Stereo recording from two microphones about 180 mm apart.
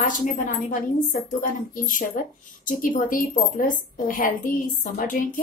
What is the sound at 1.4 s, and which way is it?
A woman's voice, 50° left (ahead or behind).